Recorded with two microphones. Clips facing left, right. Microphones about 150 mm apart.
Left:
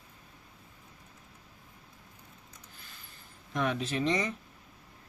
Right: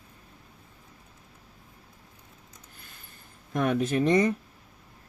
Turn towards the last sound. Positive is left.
turn(degrees=-50)  # may be behind; listen again after turning